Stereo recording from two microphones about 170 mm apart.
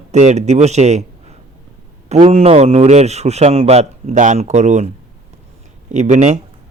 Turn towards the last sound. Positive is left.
turn(degrees=-45)  # may be behind; listen again after turning